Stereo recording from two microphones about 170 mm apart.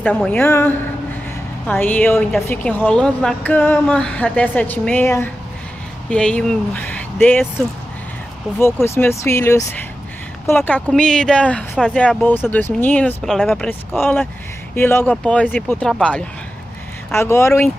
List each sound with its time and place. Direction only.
0.0 s a woman's voice: 5° left (ahead or behind)
8.5 s speech: centre (ahead or behind)
8.8 s a woman's voice: 15° left (ahead or behind)